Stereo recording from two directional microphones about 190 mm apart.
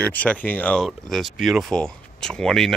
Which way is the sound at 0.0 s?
5° left (ahead or behind).